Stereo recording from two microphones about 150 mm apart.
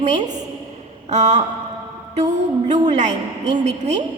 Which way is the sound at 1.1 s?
50° right (ahead or behind).